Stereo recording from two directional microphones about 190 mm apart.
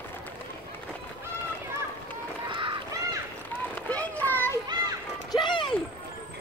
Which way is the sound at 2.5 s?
20° right (ahead or behind).